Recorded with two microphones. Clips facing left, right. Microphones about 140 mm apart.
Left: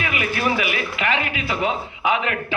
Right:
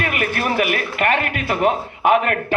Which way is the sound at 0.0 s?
50° right (ahead or behind).